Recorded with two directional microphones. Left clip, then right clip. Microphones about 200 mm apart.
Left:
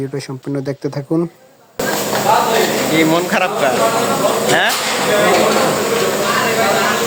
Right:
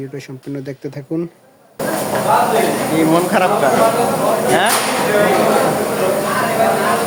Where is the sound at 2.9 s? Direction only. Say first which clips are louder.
Right 1 dB; centre (ahead or behind).